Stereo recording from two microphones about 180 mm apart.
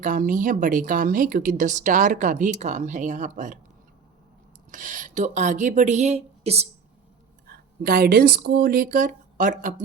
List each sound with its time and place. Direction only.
0.0 s speech: 45° right (ahead or behind)
4.7 s speech: 45° right (ahead or behind)
7.5 s speech: 60° right (ahead or behind)